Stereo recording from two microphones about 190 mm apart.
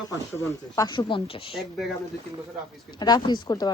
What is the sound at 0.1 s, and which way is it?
Speech, 20° left (ahead or behind).